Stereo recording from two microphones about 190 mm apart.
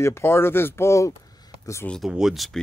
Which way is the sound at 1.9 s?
Centre (ahead or behind).